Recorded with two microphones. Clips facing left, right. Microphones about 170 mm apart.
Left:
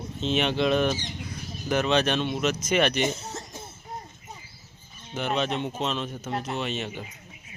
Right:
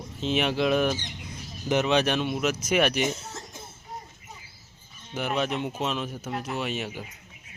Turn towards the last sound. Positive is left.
turn(degrees=-10)  # may be behind; listen again after turning